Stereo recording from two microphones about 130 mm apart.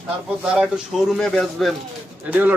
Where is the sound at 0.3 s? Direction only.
5° right (ahead or behind).